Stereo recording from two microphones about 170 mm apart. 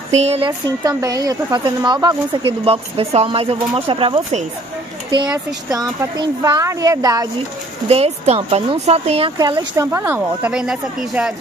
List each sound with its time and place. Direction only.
0.1 s speech: 40° right (ahead or behind)
0.5 s speech: 20° right (ahead or behind); by 4.5 s 40° right (ahead or behind)
5.7 s speech: 20° right (ahead or behind)
7.9 s speech: 35° right (ahead or behind)
9.4 s speech: 25° right (ahead or behind); by 11.3 s 5° right (ahead or behind)